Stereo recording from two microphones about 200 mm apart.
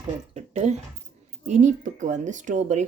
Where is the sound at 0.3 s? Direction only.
35° right (ahead or behind).